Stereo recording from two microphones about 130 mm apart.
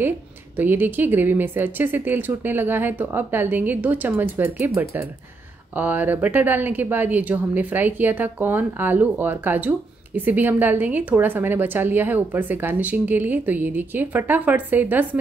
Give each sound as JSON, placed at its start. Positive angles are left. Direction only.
{"t": 0.6, "sound": "speech", "side_deg": -15}